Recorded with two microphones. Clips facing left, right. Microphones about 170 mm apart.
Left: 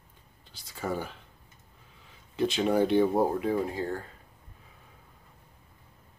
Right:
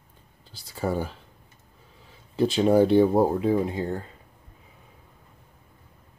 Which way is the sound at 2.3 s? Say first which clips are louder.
Right 6 dB; 35° right (ahead or behind).